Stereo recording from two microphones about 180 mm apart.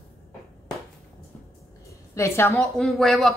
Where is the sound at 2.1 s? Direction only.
15° left (ahead or behind).